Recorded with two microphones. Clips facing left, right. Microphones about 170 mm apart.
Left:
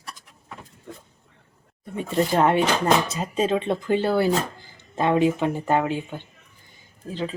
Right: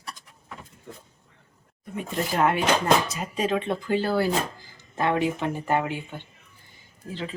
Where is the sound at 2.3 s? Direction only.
25° left (ahead or behind).